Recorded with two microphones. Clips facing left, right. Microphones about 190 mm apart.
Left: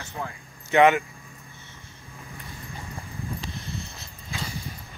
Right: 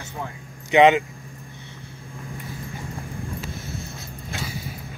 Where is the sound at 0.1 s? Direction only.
15° right (ahead or behind).